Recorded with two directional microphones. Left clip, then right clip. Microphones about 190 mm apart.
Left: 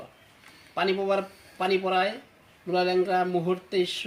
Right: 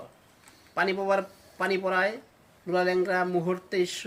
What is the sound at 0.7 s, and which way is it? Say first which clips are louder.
Speech: left 1 dB; 20° right (ahead or behind).